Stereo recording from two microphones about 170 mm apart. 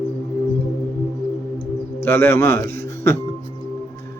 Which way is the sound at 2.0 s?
15° left (ahead or behind).